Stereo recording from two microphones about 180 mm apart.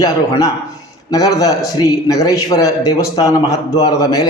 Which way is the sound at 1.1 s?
20° left (ahead or behind).